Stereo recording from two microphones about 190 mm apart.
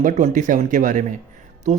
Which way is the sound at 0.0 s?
40° right (ahead or behind).